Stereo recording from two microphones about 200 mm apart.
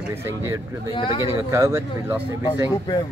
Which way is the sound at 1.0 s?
25° left (ahead or behind).